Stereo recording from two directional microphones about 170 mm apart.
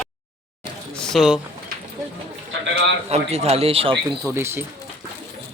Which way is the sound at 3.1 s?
40° right (ahead or behind).